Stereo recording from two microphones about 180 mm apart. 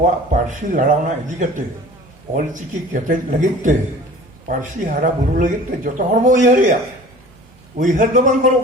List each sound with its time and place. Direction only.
0.0 s speech: 45° right (ahead or behind)
7.8 s speech: 45° right (ahead or behind)